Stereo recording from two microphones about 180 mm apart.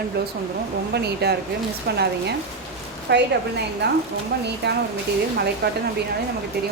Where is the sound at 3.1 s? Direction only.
70° right (ahead or behind).